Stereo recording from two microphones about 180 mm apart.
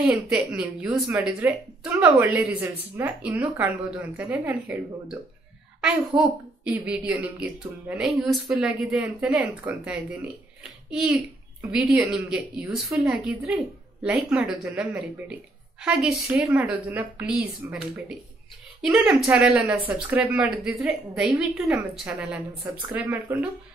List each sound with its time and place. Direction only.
0.3 s a woman's voice: 5° right (ahead or behind)
10.6 s a sound: 5° right (ahead or behind)
11.7 s a woman's voice: 5° right (ahead or behind)